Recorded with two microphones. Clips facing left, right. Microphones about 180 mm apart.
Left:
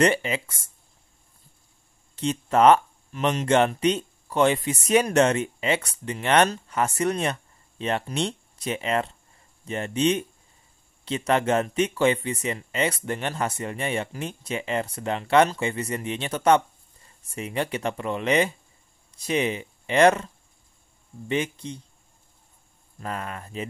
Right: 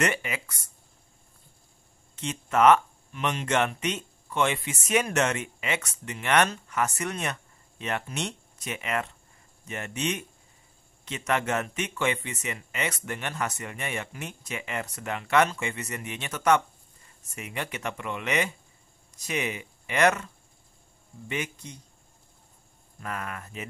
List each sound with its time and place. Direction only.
0.0 s speech: 30° left (ahead or behind)
2.1 s speech: 35° left (ahead or behind)
21.3 s speech: 30° left (ahead or behind)
22.9 s speech: 30° left (ahead or behind)